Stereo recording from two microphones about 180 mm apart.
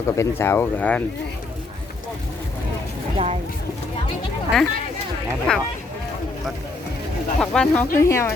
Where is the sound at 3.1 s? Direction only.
35° right (ahead or behind).